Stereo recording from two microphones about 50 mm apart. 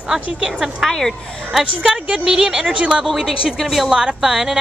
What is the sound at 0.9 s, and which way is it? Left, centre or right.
Speech, centre.